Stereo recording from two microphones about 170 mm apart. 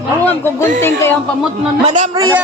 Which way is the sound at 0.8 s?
15° left (ahead or behind).